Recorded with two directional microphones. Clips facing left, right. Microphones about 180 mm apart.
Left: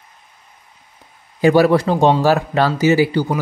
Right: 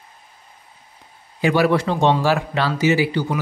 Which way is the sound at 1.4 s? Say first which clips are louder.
Left 5 dB; 40° left (ahead or behind).